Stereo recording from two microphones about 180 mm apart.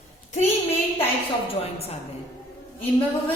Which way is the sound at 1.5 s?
35° left (ahead or behind).